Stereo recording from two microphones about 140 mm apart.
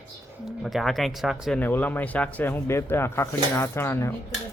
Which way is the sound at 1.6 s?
15° left (ahead or behind).